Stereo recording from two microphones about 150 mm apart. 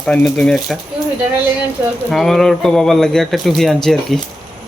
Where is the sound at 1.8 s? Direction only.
20° right (ahead or behind).